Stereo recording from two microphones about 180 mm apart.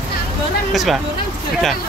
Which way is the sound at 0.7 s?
Centre (ahead or behind).